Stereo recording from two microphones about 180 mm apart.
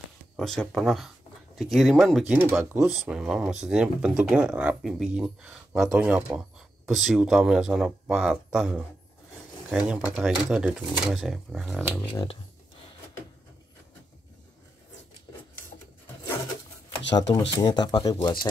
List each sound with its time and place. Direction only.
0.4 s speech: centre (ahead or behind)
12.1 s speech: 25° left (ahead or behind)
17.1 s speech: 35° left (ahead or behind)
17.6 s speech: 20° left (ahead or behind)